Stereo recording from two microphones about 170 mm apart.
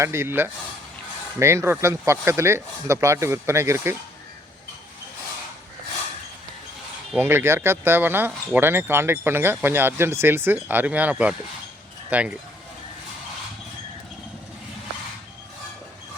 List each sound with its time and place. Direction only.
0.0 s speech: 15° right (ahead or behind)
7.2 s speech: 15° right (ahead or behind)